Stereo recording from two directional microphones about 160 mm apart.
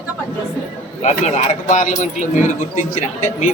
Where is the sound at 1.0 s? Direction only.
45° left (ahead or behind).